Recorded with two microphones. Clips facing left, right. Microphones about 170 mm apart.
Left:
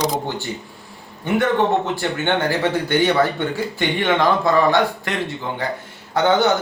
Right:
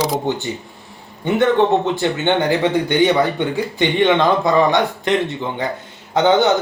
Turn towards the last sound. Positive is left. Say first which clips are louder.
# right 3 dB
turn(degrees=-20)  # may be behind; listen again after turning